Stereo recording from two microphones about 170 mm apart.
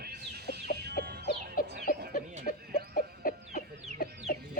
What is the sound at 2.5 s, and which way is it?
Chicken, 55° left (ahead or behind).